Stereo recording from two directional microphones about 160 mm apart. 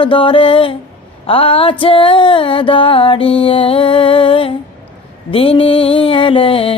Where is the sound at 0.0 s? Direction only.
30° left (ahead or behind).